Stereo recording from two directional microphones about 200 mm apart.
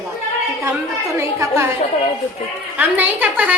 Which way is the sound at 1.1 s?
15° right (ahead or behind).